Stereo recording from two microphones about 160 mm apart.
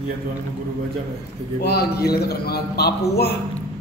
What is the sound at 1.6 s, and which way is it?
Speech, 80° left.